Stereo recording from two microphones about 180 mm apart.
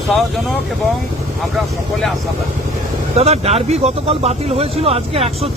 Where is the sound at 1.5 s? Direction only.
Centre (ahead or behind).